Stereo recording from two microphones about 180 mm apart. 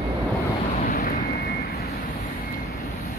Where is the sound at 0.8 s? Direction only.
55° left (ahead or behind).